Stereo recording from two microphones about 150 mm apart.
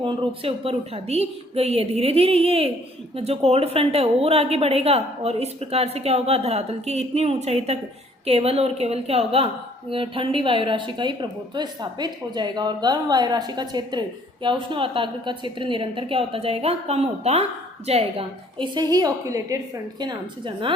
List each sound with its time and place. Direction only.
0.0 s a woman's voice: 35° right (ahead or behind)